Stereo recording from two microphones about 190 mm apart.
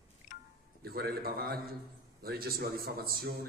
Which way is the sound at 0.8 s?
55° right (ahead or behind).